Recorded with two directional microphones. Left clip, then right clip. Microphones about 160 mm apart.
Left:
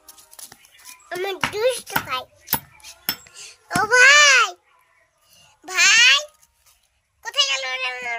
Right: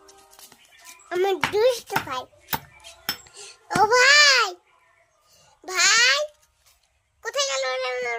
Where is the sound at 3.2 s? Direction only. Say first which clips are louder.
Right 1 dB; 25° right (ahead or behind).